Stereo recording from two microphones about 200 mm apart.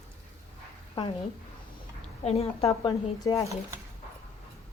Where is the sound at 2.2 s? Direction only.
30° left (ahead or behind).